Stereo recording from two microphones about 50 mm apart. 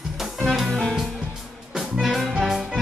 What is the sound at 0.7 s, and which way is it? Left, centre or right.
Music, centre.